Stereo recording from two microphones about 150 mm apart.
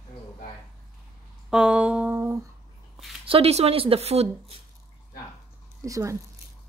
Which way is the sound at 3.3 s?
40° right (ahead or behind).